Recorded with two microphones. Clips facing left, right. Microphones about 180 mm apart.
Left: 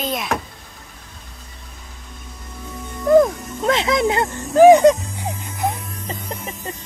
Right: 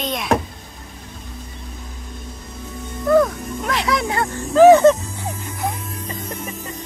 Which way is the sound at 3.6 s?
25° left (ahead or behind).